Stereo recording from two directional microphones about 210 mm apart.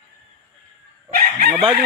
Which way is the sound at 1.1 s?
45° right (ahead or behind).